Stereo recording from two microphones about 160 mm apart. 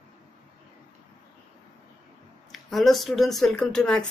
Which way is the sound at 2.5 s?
Centre (ahead or behind).